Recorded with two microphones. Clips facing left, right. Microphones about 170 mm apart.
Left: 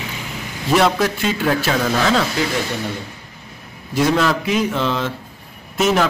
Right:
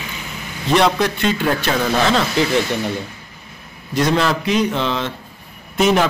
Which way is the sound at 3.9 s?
5° left (ahead or behind).